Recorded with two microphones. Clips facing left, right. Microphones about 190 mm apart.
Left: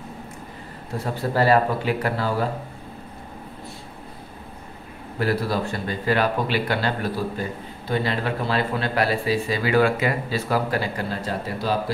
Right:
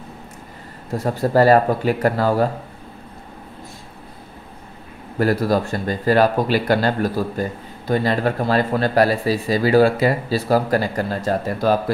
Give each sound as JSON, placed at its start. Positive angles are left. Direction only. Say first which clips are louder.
{"t": 0.9, "sound": "speech", "louder": "right 6 dB", "side_deg": -45}
{"t": 5.2, "sound": "speech", "louder": "right 5 dB", "side_deg": -45}